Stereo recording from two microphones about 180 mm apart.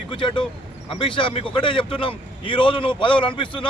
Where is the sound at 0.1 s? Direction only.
25° left (ahead or behind).